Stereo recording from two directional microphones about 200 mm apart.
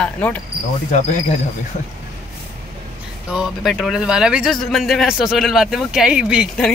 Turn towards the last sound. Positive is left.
turn(degrees=-5)  # may be behind; listen again after turning